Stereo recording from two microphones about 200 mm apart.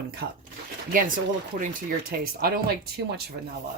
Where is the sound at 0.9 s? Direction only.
45° right (ahead or behind).